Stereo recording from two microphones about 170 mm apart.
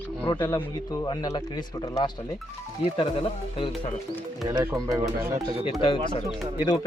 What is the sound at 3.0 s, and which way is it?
Speech, 30° left (ahead or behind).